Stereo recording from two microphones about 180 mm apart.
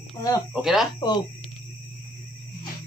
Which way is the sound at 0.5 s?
Centre (ahead or behind).